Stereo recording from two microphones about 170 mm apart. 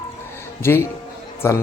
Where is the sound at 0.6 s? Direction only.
15° left (ahead or behind).